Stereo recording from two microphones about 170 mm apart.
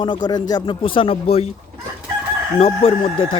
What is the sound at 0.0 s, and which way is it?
Speech, 25° left (ahead or behind).